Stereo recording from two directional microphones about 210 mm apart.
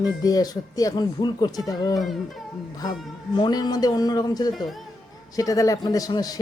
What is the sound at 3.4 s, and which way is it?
Speech, 20° left (ahead or behind).